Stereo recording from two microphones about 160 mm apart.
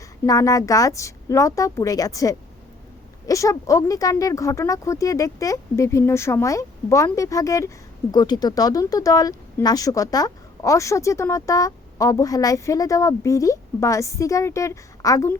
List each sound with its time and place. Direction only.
0.3 s speech: 20° left (ahead or behind)